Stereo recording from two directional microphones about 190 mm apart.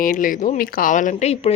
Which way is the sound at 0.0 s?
45° left (ahead or behind).